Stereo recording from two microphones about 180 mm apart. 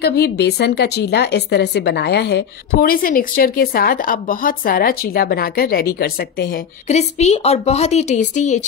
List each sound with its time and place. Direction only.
0.0 s a woman's voice: 65° left (ahead or behind)
6.9 s a woman's voice: 40° left (ahead or behind)